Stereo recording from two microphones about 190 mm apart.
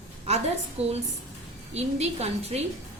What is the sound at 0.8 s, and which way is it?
Speech, 35° right (ahead or behind).